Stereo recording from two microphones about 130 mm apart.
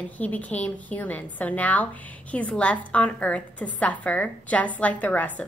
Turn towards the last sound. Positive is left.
turn(degrees=10)  # may be behind; listen again after turning